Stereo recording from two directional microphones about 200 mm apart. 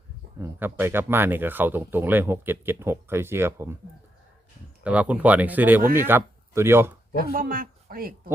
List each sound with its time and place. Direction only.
0.3 s speech: 10° right (ahead or behind)
4.8 s speech: 5° right (ahead or behind)
7.3 s speech: 45° right (ahead or behind)